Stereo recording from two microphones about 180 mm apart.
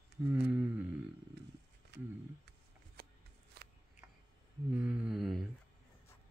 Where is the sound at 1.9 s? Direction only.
70° right (ahead or behind).